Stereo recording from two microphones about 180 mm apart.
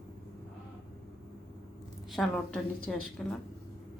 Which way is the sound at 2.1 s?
5° left (ahead or behind).